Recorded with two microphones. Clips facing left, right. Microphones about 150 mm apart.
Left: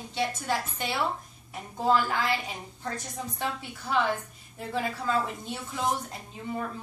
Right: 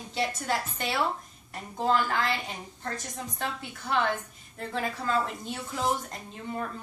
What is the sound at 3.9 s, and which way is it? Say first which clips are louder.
A woman's voice: left 1 dB; centre (ahead or behind).